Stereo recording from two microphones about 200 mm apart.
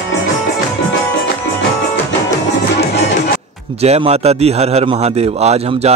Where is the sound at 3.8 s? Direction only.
30° right (ahead or behind).